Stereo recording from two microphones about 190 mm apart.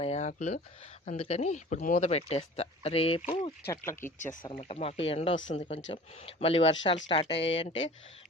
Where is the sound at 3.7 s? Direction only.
15° left (ahead or behind).